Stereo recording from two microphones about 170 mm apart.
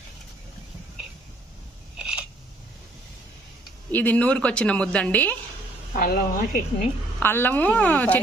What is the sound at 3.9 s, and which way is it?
A woman's voice, 10° left (ahead or behind).